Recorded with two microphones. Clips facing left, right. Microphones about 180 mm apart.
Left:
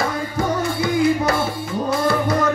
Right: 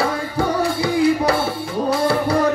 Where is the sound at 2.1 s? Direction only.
30° right (ahead or behind).